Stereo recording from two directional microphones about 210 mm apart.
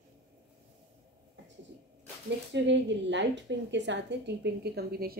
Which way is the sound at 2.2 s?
60° right (ahead or behind).